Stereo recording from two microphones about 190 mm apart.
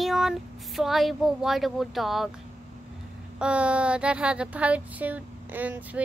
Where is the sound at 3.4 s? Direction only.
5° right (ahead or behind).